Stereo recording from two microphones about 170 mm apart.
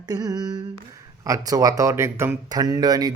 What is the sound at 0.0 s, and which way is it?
Humming, 20° right (ahead or behind).